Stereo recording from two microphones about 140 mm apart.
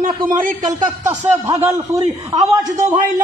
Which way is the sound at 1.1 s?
25° right (ahead or behind).